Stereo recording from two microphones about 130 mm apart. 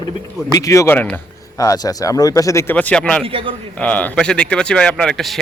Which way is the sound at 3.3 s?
45° right (ahead or behind).